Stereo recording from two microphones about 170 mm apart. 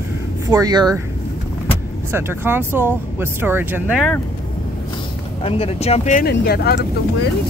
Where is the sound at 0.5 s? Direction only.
25° right (ahead or behind).